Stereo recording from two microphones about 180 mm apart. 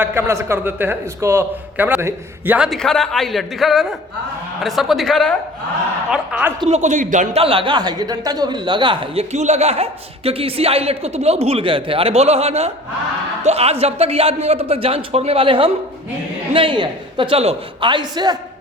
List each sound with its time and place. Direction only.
0.0 s a man's voice: 10° right (ahead or behind)
6.7 s a man's voice: 40° right (ahead or behind)
9.3 s a man's voice: 40° right (ahead or behind)